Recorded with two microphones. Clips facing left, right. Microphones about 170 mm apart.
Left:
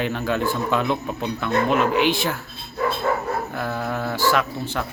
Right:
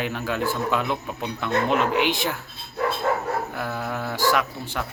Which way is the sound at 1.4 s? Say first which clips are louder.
Left 2 dB; 20° right (ahead or behind).